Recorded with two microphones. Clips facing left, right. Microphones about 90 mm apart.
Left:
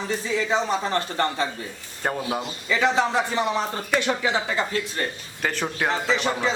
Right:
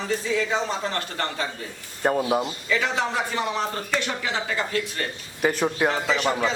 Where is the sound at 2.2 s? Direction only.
10° right (ahead or behind).